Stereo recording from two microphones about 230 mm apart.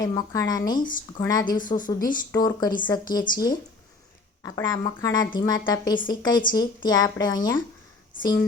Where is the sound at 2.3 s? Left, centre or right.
Centre.